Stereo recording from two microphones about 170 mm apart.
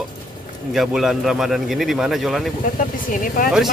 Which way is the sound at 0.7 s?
Centre (ahead or behind).